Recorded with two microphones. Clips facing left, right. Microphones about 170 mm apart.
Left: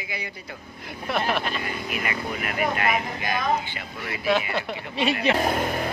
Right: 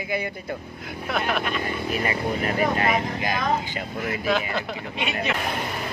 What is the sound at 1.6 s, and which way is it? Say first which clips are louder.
Speech: right 4 dB; 35° right (ahead or behind).